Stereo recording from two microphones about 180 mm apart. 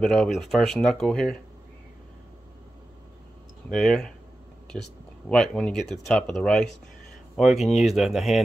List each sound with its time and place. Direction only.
0.0 s speech: 5° left (ahead or behind)
3.7 s speech: 5° left (ahead or behind)
5.3 s speech: 5° left (ahead or behind)